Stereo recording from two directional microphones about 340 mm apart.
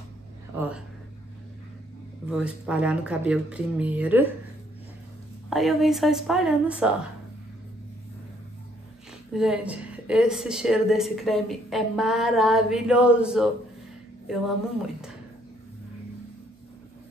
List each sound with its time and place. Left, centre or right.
0.6 s a woman's voice: centre
2.2 s a woman's voice: centre
5.5 s a woman's voice: centre
9.3 s a woman's voice: centre